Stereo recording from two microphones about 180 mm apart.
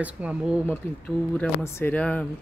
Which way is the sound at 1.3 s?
10° left (ahead or behind).